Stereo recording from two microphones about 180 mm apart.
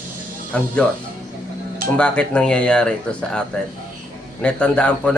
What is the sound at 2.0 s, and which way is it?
Speech, 5° left (ahead or behind).